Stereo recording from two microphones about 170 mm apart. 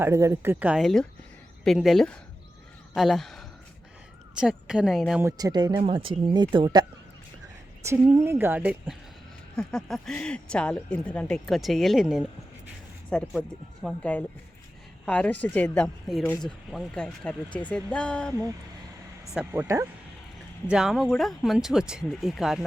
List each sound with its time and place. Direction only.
0.0 s a woman's voice: 15° right (ahead or behind); by 5.2 s centre (ahead or behind)
5.2 s speech: 25° right (ahead or behind)
7.9 s a woman's voice: 15° right (ahead or behind)
9.6 s speech: 5° left (ahead or behind)
19.5 s a woman's voice: 15° right (ahead or behind)
20.7 s speech: 5° right (ahead or behind)